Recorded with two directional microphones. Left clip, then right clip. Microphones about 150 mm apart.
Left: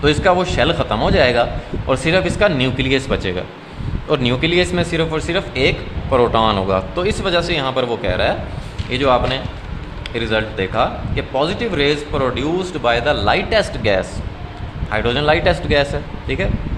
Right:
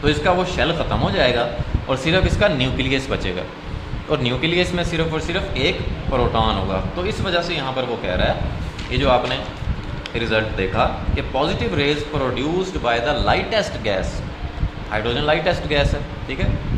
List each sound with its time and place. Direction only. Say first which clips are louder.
0.0 s a man's voice: left 4 dB; 50° left (ahead or behind)
10.2 s a man's voice: left 1 dB; 30° left (ahead or behind)